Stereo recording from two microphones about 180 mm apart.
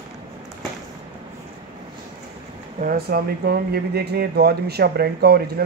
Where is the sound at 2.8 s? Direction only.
55° right (ahead or behind).